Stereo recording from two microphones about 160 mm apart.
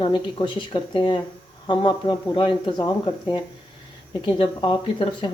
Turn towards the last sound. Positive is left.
turn(degrees=30)  # may be behind; listen again after turning